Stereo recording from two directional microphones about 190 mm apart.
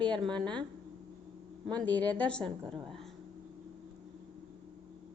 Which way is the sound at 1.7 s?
10° left (ahead or behind).